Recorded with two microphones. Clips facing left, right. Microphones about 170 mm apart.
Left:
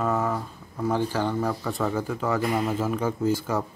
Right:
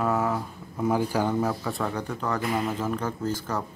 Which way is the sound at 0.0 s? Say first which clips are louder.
Even; centre (ahead or behind).